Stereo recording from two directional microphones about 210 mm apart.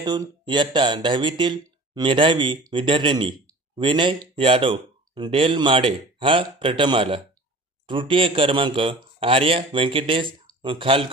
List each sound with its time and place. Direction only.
0.0 s speech: 20° right (ahead or behind)